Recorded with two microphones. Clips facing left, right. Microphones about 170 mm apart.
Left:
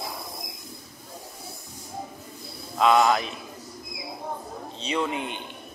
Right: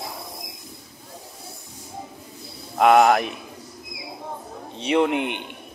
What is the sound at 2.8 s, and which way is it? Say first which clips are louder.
Speech: right 4 dB; 60° right (ahead or behind).